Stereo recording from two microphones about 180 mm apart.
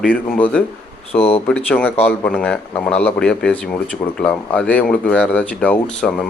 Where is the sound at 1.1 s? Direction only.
35° left (ahead or behind).